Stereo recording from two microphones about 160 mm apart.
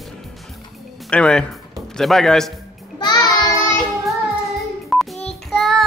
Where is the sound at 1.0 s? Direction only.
5° left (ahead or behind).